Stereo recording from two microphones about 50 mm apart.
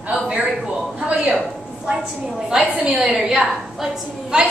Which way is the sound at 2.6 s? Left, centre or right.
Right.